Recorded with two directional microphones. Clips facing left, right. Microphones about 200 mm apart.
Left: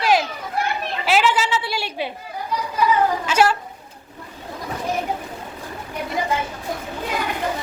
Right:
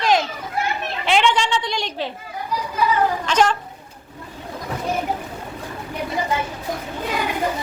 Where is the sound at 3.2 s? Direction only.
5° left (ahead or behind).